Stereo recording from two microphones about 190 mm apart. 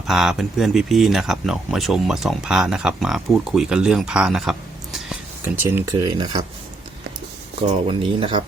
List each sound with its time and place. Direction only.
0.1 s speech: centre (ahead or behind)
5.5 s speech: 15° right (ahead or behind)
7.7 s speech: 25° right (ahead or behind)